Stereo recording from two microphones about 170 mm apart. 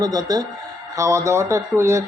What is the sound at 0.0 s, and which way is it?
A man's voice, 20° right (ahead or behind).